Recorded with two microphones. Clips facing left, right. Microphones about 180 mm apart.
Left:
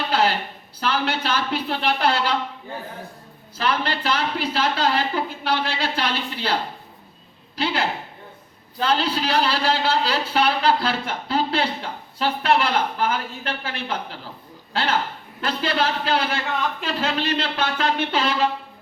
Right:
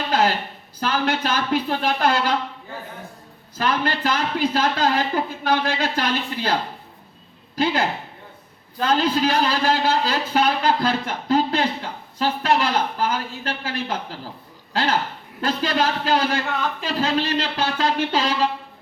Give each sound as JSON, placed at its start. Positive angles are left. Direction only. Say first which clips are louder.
{"t": 0.1, "sound": "a sound", "louder": "right 1 dB", "side_deg": -45}
{"t": 0.8, "sound": "speech", "louder": "right 2 dB", "side_deg": -45}
{"t": 3.6, "sound": "a woman's voice", "louder": "right 2 dB", "side_deg": -45}